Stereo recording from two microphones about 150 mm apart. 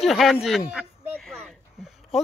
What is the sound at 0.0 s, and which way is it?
Speech, centre (ahead or behind).